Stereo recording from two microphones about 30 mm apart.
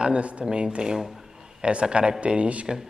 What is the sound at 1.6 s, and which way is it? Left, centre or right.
Speech, right.